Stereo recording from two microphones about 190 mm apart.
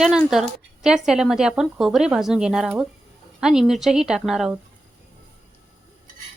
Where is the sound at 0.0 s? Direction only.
Centre (ahead or behind).